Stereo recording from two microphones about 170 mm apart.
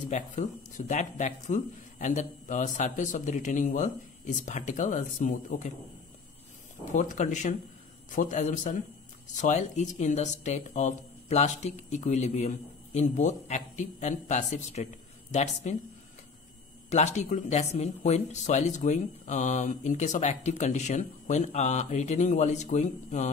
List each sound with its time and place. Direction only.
0.1 s speech: 45° left (ahead or behind)
6.9 s speech: 45° left (ahead or behind)
16.9 s speech: 40° left (ahead or behind)